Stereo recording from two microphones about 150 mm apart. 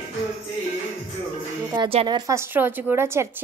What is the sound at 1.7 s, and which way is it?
Speech, 30° right (ahead or behind).